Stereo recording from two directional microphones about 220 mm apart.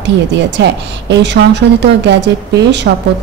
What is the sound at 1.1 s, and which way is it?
Speech, 50° right (ahead or behind).